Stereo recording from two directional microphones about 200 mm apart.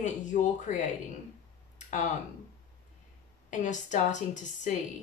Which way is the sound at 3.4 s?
40° left (ahead or behind).